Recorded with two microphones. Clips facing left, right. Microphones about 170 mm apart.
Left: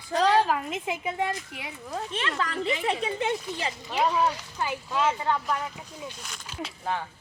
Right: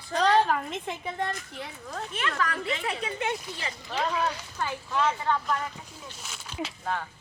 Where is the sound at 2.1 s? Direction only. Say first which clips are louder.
Right 1 dB; 25° left (ahead or behind).